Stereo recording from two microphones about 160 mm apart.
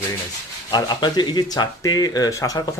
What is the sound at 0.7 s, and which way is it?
Speech, 25° left (ahead or behind).